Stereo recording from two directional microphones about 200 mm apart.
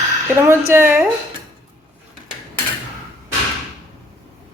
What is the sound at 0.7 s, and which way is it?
Speech, 10° right (ahead or behind).